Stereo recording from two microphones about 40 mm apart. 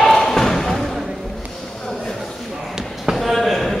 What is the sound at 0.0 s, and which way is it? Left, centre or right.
Thump, centre.